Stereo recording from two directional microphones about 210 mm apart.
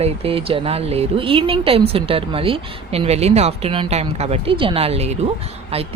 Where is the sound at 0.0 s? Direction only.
25° right (ahead or behind).